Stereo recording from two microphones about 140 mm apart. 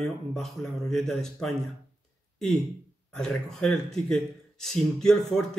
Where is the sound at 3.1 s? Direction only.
5° left (ahead or behind).